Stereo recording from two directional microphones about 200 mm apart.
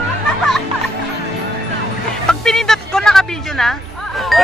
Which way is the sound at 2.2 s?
Centre (ahead or behind).